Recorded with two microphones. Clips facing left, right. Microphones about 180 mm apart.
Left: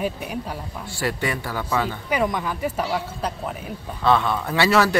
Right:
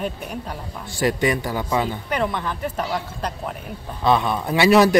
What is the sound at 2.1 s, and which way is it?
A woman's voice, 10° left (ahead or behind).